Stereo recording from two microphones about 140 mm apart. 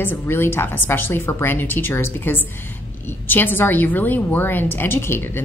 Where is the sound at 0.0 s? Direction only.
15° left (ahead or behind).